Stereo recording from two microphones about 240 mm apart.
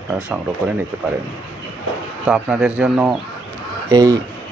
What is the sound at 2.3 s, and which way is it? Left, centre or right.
Speech, centre.